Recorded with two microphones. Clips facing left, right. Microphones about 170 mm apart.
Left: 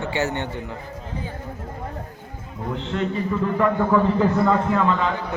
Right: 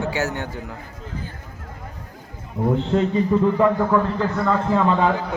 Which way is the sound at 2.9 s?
25° right (ahead or behind).